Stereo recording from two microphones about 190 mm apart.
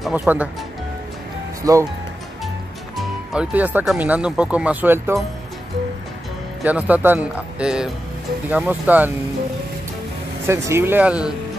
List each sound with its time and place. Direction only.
0.0 s speech: 5° right (ahead or behind)
1.6 s speech: 20° right (ahead or behind)
3.0 s speech: 5° right (ahead or behind)
6.6 s speech: 10° right (ahead or behind)
10.4 s speech: 15° right (ahead or behind)